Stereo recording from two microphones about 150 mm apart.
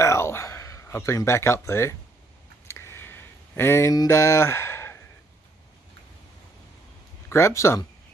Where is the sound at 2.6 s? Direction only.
15° left (ahead or behind).